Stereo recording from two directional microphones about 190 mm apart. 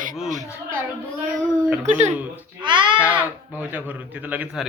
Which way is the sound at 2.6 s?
25° right (ahead or behind).